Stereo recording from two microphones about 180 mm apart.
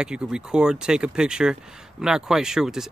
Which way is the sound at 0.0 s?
5° right (ahead or behind).